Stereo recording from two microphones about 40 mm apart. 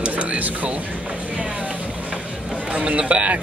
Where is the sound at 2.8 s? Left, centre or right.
Right.